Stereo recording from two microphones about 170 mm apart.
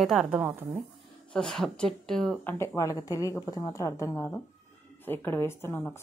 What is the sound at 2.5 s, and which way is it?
A woman's voice, 15° left (ahead or behind).